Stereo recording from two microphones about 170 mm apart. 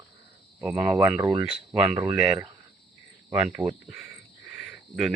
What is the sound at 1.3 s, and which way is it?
Speech, 25° right (ahead or behind).